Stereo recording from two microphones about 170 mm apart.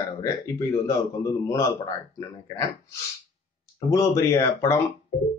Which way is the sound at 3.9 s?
20° left (ahead or behind).